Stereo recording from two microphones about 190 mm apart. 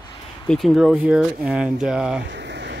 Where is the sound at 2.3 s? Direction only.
65° right (ahead or behind).